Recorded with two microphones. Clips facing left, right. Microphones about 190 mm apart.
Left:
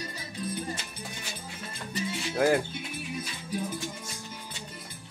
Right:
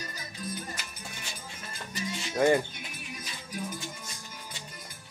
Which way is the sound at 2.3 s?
5° left (ahead or behind).